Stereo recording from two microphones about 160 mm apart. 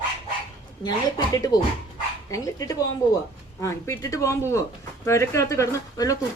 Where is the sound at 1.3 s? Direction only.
25° left (ahead or behind).